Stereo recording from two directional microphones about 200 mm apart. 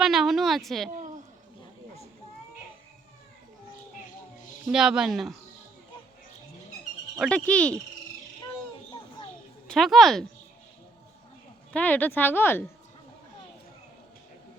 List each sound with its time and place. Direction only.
0.0 s speech: centre (ahead or behind)
0.9 s a sound: 40° right (ahead or behind)
4.6 s speech: 5° right (ahead or behind)
7.2 s speech: 5° left (ahead or behind)
9.6 s speech: centre (ahead or behind)
11.7 s speech: 5° left (ahead or behind)